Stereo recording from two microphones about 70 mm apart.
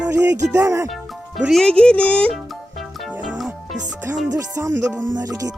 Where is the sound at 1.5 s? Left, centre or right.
Centre.